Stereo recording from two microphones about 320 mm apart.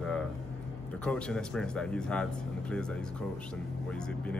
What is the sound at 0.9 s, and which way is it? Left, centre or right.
Speech, centre.